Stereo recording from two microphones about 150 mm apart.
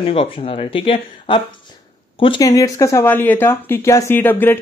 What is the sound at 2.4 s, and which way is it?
Speech, 20° left (ahead or behind).